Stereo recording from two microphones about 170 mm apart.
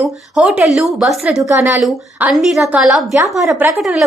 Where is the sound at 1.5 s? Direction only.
15° right (ahead or behind).